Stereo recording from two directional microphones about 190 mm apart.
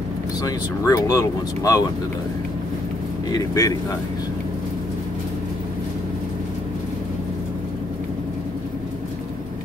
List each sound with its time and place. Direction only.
0.4 s speech: 15° left (ahead or behind)
3.3 s speech: 20° left (ahead or behind)